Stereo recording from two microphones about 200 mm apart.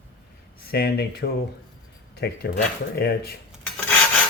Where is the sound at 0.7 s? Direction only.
55° left (ahead or behind).